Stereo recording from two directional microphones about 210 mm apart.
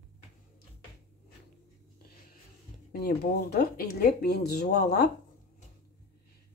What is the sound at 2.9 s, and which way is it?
Speech, 40° left (ahead or behind).